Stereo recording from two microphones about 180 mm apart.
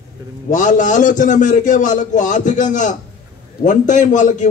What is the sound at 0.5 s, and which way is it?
A man's voice, 45° left (ahead or behind).